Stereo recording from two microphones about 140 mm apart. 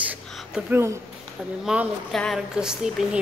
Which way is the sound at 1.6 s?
5° right (ahead or behind).